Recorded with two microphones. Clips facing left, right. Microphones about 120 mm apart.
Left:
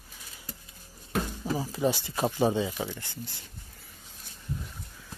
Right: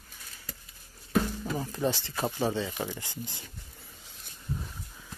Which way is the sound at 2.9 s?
15° right (ahead or behind).